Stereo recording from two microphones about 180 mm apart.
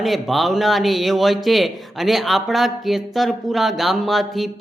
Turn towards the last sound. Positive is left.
turn(degrees=0)  # may be behind; listen again after turning